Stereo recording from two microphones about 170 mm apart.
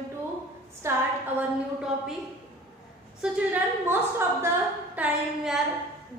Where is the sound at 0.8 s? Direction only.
15° right (ahead or behind).